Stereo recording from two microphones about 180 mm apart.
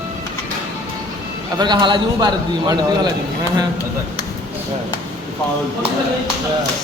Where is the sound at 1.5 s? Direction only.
25° right (ahead or behind).